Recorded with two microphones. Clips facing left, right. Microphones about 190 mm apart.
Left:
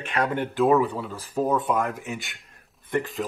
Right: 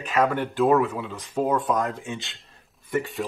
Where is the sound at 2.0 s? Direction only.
25° right (ahead or behind).